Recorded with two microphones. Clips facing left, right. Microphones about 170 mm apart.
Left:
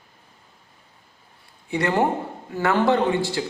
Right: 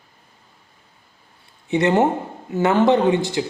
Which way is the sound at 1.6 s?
20° right (ahead or behind).